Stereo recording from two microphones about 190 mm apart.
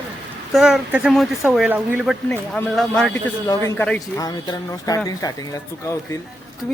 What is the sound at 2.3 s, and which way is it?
Speech, 10° left (ahead or behind).